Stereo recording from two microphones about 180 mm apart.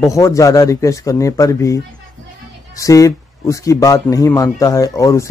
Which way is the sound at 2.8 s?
20° left (ahead or behind).